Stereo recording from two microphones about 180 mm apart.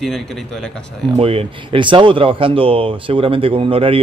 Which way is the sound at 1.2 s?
30° right (ahead or behind).